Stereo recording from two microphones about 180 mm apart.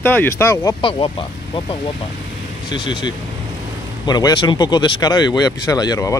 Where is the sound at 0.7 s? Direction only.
30° left (ahead or behind).